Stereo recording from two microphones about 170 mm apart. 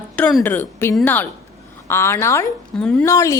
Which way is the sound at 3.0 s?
15° left (ahead or behind).